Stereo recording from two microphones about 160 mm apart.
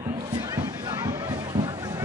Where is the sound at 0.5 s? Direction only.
25° right (ahead or behind).